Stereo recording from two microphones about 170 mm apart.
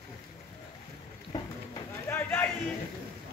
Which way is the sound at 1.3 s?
20° left (ahead or behind).